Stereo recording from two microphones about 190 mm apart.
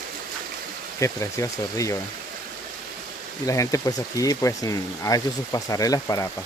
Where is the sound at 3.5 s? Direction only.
15° left (ahead or behind).